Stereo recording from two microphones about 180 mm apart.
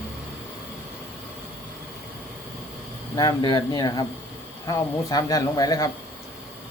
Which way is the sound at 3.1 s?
20° left (ahead or behind).